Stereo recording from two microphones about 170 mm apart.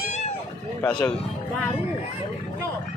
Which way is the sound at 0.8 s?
10° left (ahead or behind).